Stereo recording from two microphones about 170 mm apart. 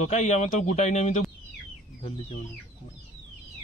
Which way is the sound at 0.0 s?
40° left (ahead or behind).